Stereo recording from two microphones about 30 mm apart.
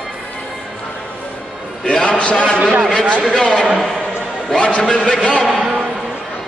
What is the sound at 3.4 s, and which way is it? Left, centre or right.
Speech, left.